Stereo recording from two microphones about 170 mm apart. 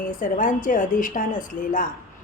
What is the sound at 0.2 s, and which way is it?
A woman's voice, 50° left (ahead or behind).